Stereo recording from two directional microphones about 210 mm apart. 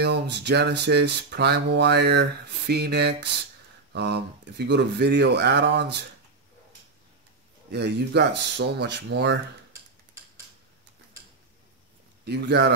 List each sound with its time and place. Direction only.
0.0 s speech: 50° right (ahead or behind)
7.7 s speech: 50° right (ahead or behind)
12.3 s speech: 55° right (ahead or behind)